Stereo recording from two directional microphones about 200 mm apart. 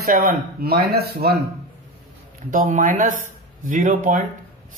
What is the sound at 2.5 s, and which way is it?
Speech, 40° right (ahead or behind).